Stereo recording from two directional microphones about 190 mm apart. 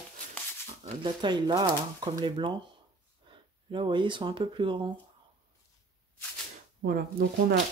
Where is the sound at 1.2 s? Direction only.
25° right (ahead or behind).